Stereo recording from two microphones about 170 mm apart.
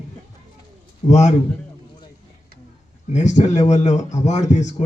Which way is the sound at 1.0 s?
40° left (ahead or behind).